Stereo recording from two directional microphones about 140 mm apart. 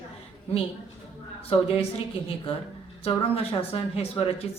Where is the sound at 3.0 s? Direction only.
45° left (ahead or behind).